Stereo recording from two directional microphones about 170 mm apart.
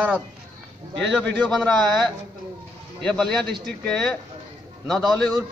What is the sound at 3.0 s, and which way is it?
A man's voice, 5° left (ahead or behind).